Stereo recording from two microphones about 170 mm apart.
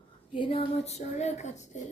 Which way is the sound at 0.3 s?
30° left (ahead or behind).